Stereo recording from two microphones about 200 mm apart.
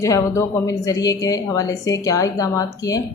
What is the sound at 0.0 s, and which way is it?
A woman's voice, 15° left (ahead or behind).